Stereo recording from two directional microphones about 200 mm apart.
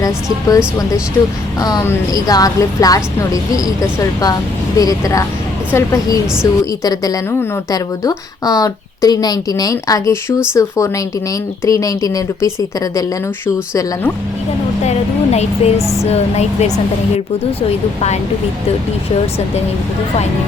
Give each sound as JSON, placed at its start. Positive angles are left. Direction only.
{"t": 0.0, "sound": "a woman's voice", "side_deg": 15}
{"t": 14.8, "sound": "speech", "side_deg": 30}